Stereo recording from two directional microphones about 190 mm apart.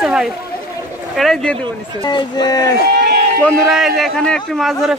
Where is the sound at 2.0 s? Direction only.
20° left (ahead or behind).